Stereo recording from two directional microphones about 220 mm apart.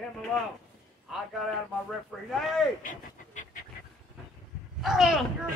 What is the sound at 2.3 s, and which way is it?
Speech, centre (ahead or behind).